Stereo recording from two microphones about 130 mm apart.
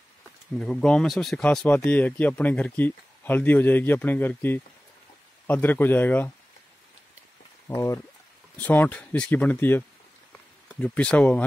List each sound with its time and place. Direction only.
0.6 s speech: 5° left (ahead or behind)
7.6 s speech: 20° left (ahead or behind)